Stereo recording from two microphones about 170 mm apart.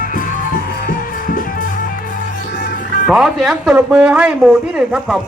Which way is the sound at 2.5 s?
90° left.